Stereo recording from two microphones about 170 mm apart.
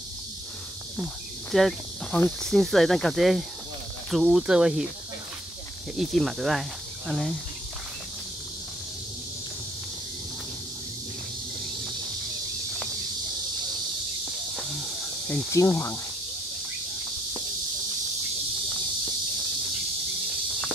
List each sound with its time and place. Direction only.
0.9 s cricket: centre (ahead or behind)
2.5 s speech: centre (ahead or behind)
5.9 s speech: centre (ahead or behind)
15.2 s speech: 10° left (ahead or behind)
15.6 s cricket: 15° left (ahead or behind)